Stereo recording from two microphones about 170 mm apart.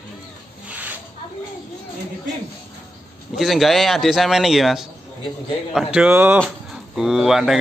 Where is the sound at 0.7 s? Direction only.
10° right (ahead or behind).